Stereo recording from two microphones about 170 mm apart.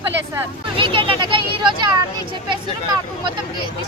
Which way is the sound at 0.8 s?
30° right (ahead or behind).